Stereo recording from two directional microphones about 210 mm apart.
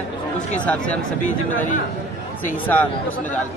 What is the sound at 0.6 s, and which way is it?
Speech, 5° left (ahead or behind).